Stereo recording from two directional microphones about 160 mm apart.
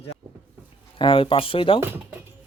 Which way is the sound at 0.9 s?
30° left (ahead or behind).